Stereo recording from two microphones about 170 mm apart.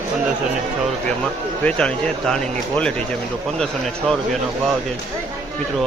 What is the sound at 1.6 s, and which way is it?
Speech, 5° left (ahead or behind).